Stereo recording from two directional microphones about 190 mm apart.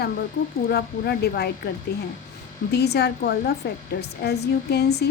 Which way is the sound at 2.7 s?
60° left (ahead or behind).